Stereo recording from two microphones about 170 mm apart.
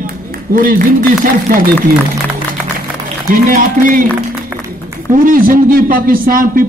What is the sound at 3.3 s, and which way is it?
Speech, 55° right (ahead or behind).